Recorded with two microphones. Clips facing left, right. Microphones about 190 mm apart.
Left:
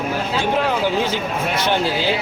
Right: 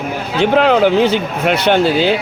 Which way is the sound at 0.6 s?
70° right (ahead or behind).